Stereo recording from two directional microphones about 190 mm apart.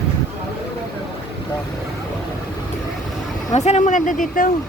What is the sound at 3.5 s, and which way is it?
Speech, 35° left (ahead or behind).